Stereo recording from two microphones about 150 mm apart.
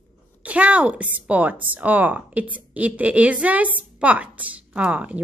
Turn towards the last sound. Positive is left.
turn(degrees=-10)  # may be behind; listen again after turning